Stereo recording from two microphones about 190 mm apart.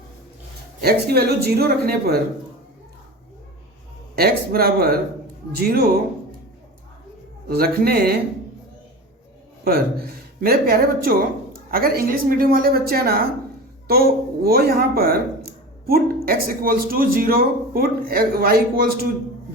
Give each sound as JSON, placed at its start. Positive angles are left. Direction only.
{"t": 0.8, "sound": "a man's voice", "side_deg": -55}
{"t": 4.1, "sound": "a man's voice", "side_deg": -55}
{"t": 7.4, "sound": "speech", "side_deg": -55}
{"t": 10.4, "sound": "speech", "side_deg": -50}